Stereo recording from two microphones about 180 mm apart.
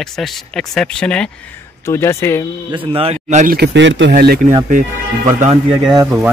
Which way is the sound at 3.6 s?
85° right.